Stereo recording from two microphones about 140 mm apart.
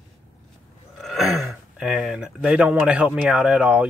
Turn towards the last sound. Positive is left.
turn(degrees=-5)  # may be behind; listen again after turning